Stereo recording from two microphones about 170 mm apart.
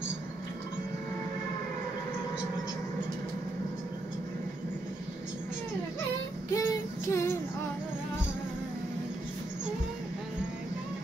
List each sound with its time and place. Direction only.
6.5 s child singing: 15° left (ahead or behind)